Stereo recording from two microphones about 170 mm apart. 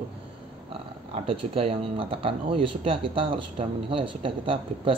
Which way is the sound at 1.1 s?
35° right (ahead or behind).